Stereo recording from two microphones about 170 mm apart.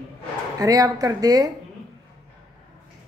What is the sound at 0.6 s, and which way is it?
Speech, 20° right (ahead or behind).